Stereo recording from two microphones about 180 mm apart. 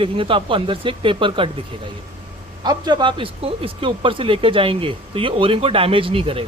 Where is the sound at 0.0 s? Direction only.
30° right (ahead or behind).